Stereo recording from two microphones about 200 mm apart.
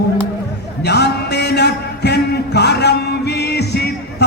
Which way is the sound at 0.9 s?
55° left (ahead or behind).